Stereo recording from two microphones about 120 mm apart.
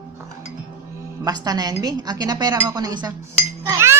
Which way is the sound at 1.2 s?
30° right (ahead or behind).